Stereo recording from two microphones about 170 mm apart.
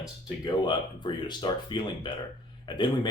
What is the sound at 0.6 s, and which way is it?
Speech, 25° left (ahead or behind).